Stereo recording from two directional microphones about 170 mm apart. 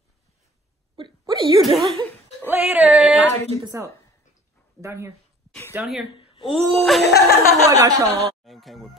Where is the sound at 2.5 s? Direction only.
10° right (ahead or behind).